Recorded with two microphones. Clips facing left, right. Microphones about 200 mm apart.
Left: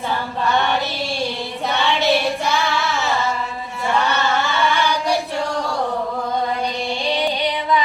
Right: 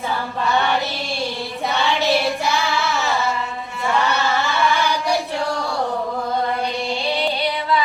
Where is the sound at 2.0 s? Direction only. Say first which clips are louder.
Left 1 dB; centre (ahead or behind).